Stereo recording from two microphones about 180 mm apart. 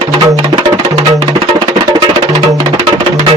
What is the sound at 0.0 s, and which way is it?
Music, 25° right (ahead or behind).